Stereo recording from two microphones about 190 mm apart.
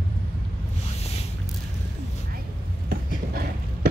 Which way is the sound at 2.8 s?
50° right (ahead or behind).